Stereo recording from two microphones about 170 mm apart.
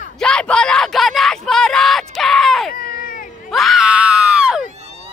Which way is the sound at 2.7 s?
60° left (ahead or behind).